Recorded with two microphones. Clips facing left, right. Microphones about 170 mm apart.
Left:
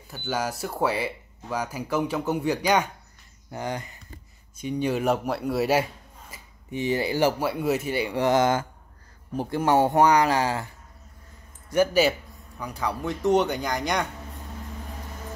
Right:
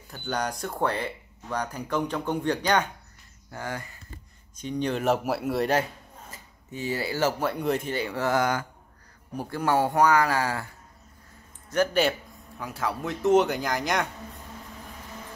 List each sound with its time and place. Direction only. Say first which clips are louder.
0.1 s a man's voice: left 1 dB; 5° left (ahead or behind)
6.3 s a man's voice: left 7 dB; 20° left (ahead or behind)
11.7 s a man's voice: left 3 dB; 5° left (ahead or behind)